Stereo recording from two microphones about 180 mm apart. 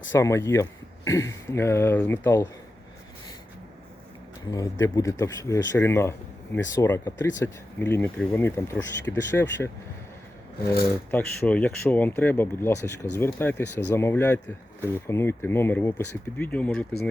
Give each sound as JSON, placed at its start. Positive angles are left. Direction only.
{"t": 0.1, "sound": "speech", "side_deg": 15}
{"t": 4.5, "sound": "speech", "side_deg": 20}
{"t": 10.8, "sound": "speech", "side_deg": 10}